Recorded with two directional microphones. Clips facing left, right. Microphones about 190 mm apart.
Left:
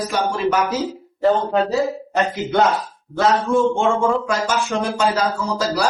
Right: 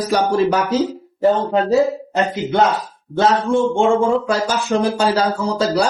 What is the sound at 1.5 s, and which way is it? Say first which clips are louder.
Speech: right 4 dB; 20° right (ahead or behind).